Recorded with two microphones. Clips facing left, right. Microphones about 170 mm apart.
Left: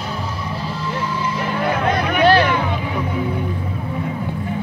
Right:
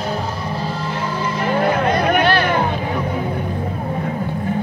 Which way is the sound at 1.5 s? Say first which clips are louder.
Right 3 dB; 50° right (ahead or behind).